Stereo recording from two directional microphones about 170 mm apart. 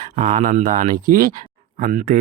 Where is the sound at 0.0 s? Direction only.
50° right (ahead or behind).